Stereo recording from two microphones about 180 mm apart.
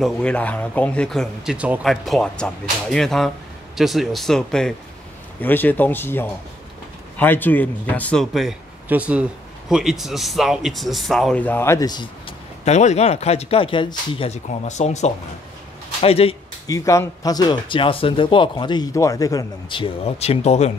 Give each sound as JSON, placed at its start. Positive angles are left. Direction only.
{"t": 0.0, "sound": "speech", "side_deg": 5}
{"t": 12.6, "sound": "speech", "side_deg": 40}
{"t": 16.6, "sound": "speech", "side_deg": 15}